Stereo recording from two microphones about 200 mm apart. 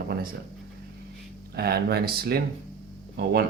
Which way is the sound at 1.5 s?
55° right (ahead or behind).